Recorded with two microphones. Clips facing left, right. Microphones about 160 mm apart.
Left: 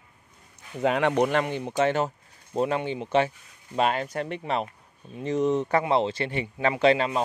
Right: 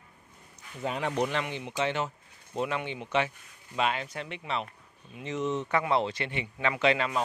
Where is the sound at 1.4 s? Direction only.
45° left (ahead or behind).